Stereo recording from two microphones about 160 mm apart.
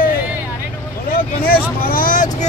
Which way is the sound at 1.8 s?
60° left (ahead or behind).